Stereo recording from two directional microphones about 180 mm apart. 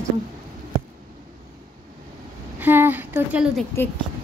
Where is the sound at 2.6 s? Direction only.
10° right (ahead or behind).